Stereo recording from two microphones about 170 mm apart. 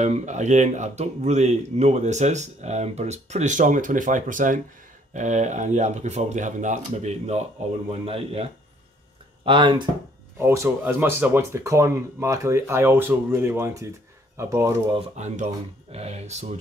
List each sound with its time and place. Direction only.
0.0 s speech: 45° right (ahead or behind); by 9.8 s 30° right (ahead or behind)
10.4 s speech: 15° right (ahead or behind)
15.0 s speech: 40° right (ahead or behind)